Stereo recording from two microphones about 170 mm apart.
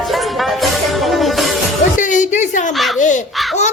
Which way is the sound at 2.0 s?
45° left (ahead or behind).